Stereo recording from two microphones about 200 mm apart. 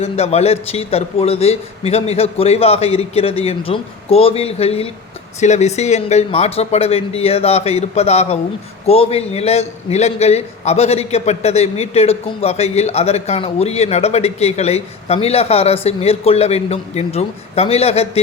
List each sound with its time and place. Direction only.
0.0 s a man's voice: 30° left (ahead or behind)